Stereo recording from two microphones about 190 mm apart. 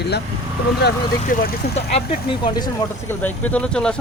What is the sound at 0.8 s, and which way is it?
Speech, 50° left (ahead or behind).